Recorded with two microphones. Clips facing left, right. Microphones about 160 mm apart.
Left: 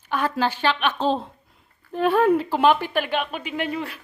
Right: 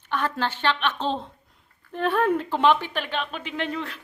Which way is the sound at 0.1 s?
10° left (ahead or behind).